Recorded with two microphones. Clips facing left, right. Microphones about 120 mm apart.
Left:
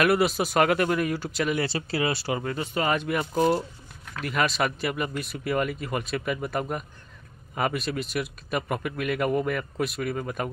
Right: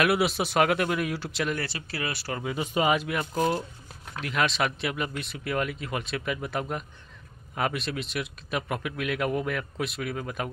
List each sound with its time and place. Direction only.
0.0 s speech: centre (ahead or behind)
1.6 s speech: 30° left (ahead or behind)
2.4 s speech: 15° right (ahead or behind)
3.0 s speech: centre (ahead or behind)